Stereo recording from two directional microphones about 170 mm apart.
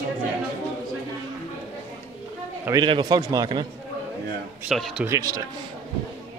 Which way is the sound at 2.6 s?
25° right (ahead or behind).